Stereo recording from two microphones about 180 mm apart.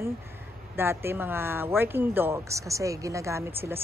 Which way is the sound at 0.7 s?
10° right (ahead or behind).